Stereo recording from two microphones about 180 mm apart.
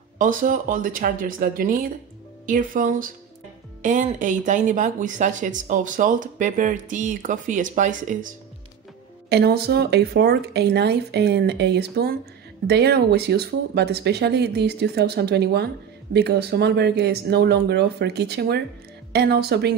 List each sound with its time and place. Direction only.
0.2 s speech: 50° right (ahead or behind)
9.3 s speech: 60° right (ahead or behind)